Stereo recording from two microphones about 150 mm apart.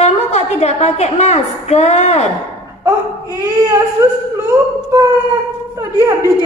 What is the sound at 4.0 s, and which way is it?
Speech, 20° right (ahead or behind).